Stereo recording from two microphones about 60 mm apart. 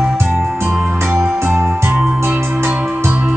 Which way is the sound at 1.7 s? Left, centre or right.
Right.